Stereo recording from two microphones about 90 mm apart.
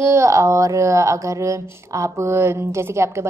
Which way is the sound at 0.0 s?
35° right (ahead or behind).